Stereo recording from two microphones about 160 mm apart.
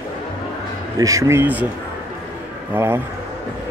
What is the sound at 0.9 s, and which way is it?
Speech, 20° right (ahead or behind).